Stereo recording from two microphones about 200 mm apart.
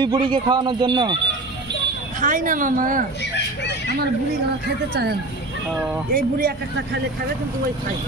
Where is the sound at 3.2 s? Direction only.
60° left (ahead or behind).